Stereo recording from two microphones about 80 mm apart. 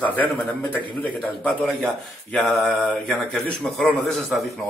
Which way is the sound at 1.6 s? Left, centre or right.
Centre.